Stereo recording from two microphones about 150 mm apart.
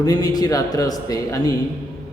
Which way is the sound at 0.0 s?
25° left (ahead or behind).